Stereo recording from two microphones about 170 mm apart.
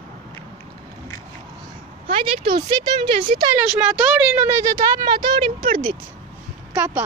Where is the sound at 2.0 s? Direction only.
35° right (ahead or behind).